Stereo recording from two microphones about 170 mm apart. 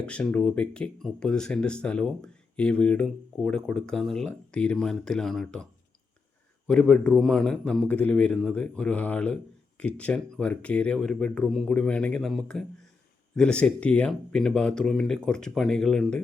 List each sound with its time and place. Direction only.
0.0 s speech: 5° left (ahead or behind)
6.7 s a man's voice: 5° left (ahead or behind)